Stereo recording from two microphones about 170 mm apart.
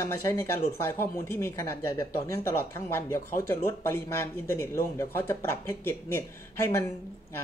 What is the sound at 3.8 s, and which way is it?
Speech, 15° left (ahead or behind).